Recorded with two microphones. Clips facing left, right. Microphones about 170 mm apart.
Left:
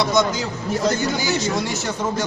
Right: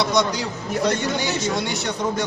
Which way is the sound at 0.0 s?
Centre (ahead or behind).